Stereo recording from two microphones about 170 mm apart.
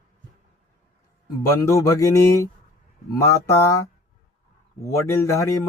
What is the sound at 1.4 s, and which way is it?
Speech, 20° left (ahead or behind).